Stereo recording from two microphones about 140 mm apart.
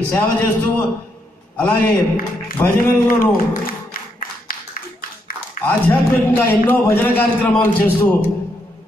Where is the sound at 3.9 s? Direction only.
90° left.